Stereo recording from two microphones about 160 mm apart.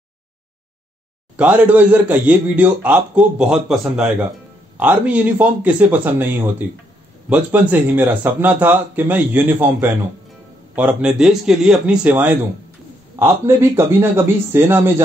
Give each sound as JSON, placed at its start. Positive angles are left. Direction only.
{"t": 1.3, "sound": "a man's voice", "side_deg": -10}